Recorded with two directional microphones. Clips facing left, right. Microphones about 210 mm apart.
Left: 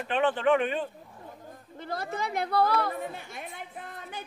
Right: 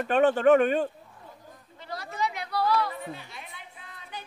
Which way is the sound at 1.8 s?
50° left (ahead or behind).